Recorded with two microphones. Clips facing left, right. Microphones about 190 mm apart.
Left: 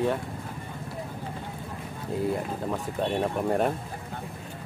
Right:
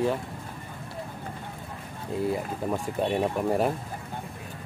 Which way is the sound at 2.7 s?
5° right (ahead or behind).